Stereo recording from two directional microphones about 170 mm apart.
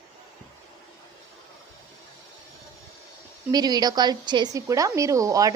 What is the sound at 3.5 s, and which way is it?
A woman's voice, 25° right (ahead or behind).